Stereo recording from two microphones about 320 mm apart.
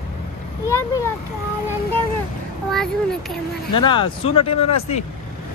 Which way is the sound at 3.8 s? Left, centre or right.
Centre.